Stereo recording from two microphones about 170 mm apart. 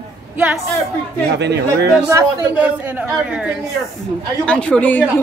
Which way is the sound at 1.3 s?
85° right.